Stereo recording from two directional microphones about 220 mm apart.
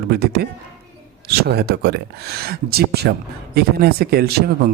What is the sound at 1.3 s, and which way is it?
Speech, 45° right (ahead or behind).